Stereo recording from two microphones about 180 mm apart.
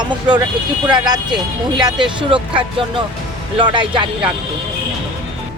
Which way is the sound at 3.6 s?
25° right (ahead or behind).